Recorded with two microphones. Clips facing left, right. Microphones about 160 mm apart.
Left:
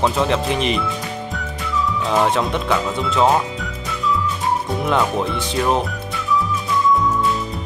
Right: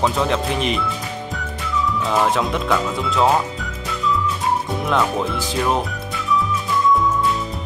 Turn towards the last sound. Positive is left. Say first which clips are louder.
# left 1 dB
turn(degrees=0)  # may be behind; listen again after turning